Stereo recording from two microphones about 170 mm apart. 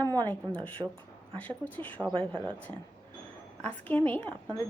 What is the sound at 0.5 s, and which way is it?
Speech, 10° left (ahead or behind).